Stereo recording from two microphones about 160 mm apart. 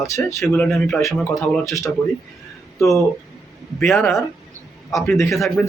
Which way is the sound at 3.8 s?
Centre (ahead or behind).